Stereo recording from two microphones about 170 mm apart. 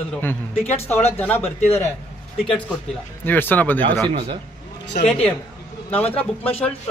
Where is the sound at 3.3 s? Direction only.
10° left (ahead or behind).